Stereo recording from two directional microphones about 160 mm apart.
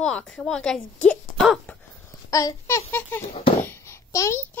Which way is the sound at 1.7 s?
10° left (ahead or behind).